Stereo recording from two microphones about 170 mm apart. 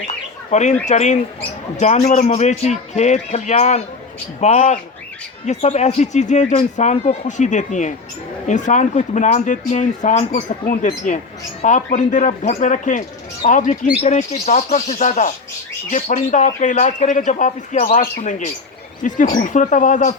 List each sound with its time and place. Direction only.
0.5 s speech: 45° left (ahead or behind)